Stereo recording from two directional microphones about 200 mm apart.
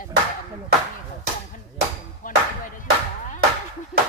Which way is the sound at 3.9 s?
5° right (ahead or behind).